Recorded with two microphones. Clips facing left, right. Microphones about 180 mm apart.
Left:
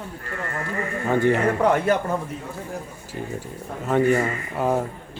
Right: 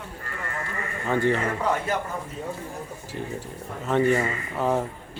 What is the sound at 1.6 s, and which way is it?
Speech, 65° left (ahead or behind).